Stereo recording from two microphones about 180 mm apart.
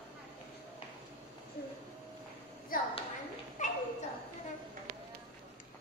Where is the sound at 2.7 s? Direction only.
50° left (ahead or behind).